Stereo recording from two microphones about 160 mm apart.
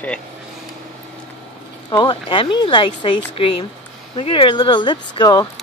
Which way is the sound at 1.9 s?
30° left (ahead or behind).